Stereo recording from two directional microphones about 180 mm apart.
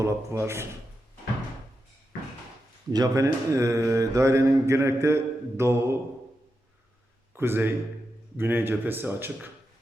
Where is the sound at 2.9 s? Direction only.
20° right (ahead or behind).